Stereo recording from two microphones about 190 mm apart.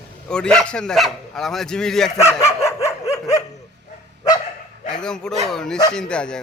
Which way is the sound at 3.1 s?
15° left (ahead or behind).